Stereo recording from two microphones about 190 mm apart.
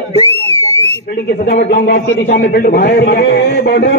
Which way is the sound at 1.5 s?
35° left (ahead or behind).